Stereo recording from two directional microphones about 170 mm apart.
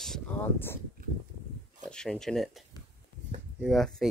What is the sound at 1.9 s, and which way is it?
Speech, 5° left (ahead or behind).